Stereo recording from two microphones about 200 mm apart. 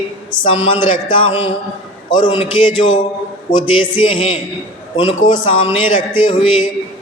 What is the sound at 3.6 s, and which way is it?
Speech, 90° left.